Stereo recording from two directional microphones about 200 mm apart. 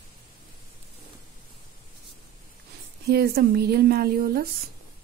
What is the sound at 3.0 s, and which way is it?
Speech, 50° right (ahead or behind).